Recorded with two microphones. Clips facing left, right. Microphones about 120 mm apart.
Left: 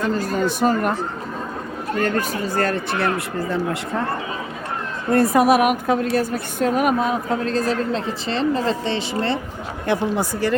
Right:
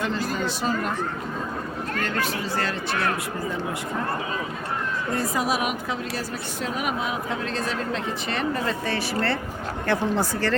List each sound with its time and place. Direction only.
0.0 s speech: 45° left (ahead or behind)
2.0 s speech: 45° left (ahead or behind)
5.1 s a woman's voice: 60° left (ahead or behind); by 10.5 s 15° left (ahead or behind)